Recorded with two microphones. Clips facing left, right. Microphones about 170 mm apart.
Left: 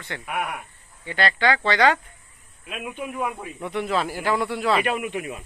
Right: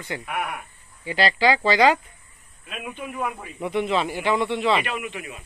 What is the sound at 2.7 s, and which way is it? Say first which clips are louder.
Speech: left 2 dB; 5° left (ahead or behind).